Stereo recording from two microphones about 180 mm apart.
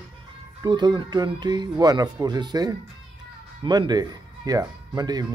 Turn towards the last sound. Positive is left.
turn(degrees=-20)  # may be behind; listen again after turning